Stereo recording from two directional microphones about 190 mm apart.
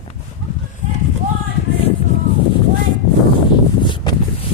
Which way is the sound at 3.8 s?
25° left (ahead or behind).